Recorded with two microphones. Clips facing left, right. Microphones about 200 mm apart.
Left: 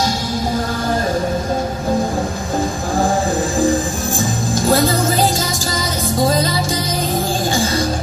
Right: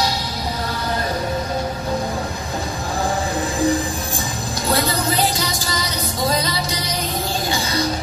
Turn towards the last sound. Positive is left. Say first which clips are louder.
# left 4 dB
turn(degrees=50)  # may be behind; listen again after turning